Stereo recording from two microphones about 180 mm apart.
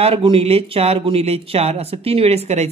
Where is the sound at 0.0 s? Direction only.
30° right (ahead or behind).